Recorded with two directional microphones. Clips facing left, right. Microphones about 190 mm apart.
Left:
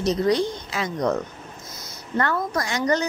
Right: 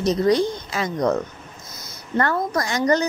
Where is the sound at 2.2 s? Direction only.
40° right (ahead or behind).